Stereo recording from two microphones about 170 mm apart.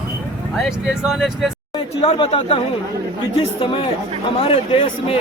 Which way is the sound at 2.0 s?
40° left (ahead or behind).